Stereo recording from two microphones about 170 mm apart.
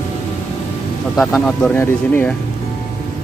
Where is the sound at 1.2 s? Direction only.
5° left (ahead or behind).